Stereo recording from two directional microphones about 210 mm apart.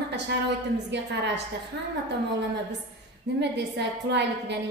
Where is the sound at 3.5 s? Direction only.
55° right (ahead or behind).